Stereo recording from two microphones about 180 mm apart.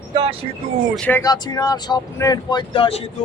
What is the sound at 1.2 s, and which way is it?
Speech, 20° left (ahead or behind).